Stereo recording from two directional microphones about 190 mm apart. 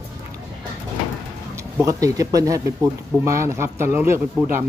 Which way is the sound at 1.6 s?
15° right (ahead or behind).